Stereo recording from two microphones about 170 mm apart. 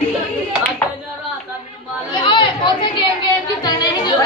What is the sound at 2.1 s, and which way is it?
Chatter, 30° left (ahead or behind).